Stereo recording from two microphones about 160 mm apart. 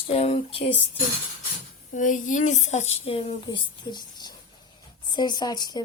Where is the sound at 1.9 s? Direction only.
50° left (ahead or behind).